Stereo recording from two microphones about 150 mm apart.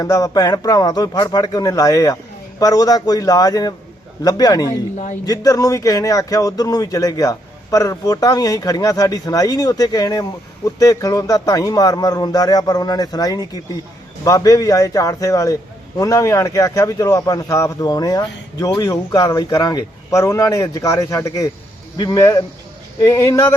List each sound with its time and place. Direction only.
0.0 s a man's voice: 25° left (ahead or behind)